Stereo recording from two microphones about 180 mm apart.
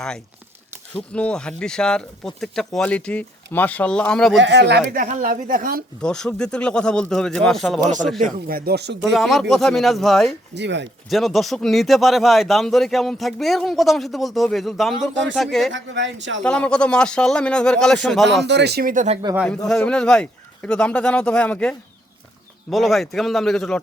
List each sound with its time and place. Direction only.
0.9 s speech: 5° left (ahead or behind)
4.4 s speech: 85° right
4.9 s speech: 45° right (ahead or behind)
6.0 s speech: 5° left (ahead or behind)
8.2 s speech: 55° right (ahead or behind)
9.0 s speech: centre (ahead or behind)
10.5 s speech: 75° right (ahead or behind)
11.1 s speech: centre (ahead or behind)
15.7 s speech: 90° right
16.4 s speech: 5° left (ahead or behind)
18.4 s speech: 70° right (ahead or behind); by 19.2 s 40° right (ahead or behind)
19.6 s speech: 5° left (ahead or behind)